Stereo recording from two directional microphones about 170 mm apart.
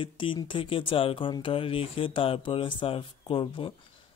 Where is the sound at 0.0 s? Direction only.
30° left (ahead or behind).